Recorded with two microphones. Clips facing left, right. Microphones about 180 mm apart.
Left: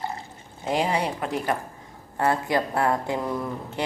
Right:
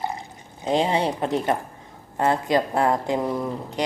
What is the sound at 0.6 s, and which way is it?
A woman's voice, 25° right (ahead or behind).